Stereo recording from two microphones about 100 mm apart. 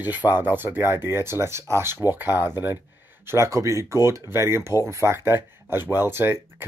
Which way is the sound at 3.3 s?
30° right (ahead or behind).